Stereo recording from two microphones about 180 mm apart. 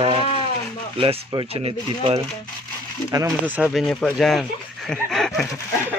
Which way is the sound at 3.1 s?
10° right (ahead or behind).